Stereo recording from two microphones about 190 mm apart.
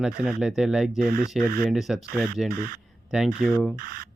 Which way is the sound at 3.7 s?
50° right (ahead or behind).